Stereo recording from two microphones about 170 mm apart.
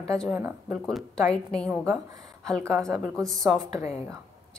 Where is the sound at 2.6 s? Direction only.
15° right (ahead or behind).